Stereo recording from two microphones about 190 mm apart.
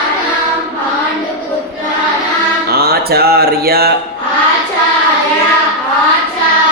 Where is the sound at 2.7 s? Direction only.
55° right (ahead or behind).